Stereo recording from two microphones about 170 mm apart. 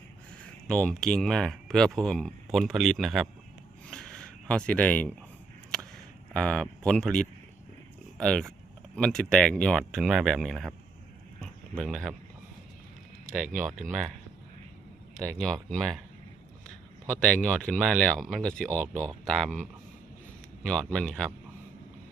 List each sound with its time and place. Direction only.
0.7 s speech: 5° left (ahead or behind)
3.8 s a sound: 5° left (ahead or behind)
6.3 s speech: 5° left (ahead or behind)
11.8 s speech: centre (ahead or behind)
13.5 s speech: 50° right (ahead or behind)
13.7 s speech: centre (ahead or behind)
15.1 s speech: 5° left (ahead or behind)
17.2 s speech: 5° left (ahead or behind)
20.7 s speech: 5° left (ahead or behind)